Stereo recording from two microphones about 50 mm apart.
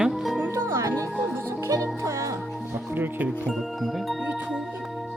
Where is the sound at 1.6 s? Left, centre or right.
Right.